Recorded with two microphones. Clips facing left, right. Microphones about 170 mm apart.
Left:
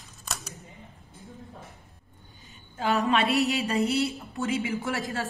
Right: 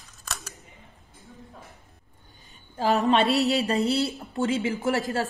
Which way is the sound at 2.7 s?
35° right (ahead or behind).